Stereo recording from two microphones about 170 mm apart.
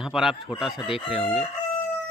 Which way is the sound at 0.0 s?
Centre (ahead or behind).